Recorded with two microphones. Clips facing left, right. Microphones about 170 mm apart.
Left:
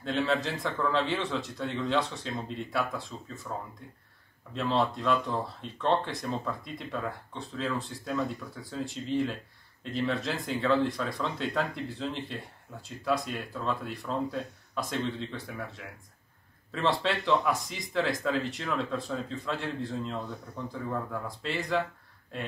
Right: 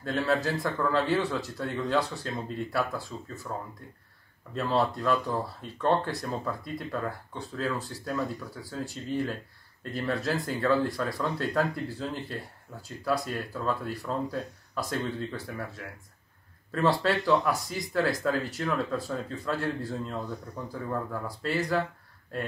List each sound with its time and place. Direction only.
0.0 s a man's voice: centre (ahead or behind)
4.6 s a man's voice: centre (ahead or behind)